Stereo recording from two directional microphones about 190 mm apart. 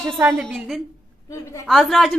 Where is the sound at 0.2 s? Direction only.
10° right (ahead or behind).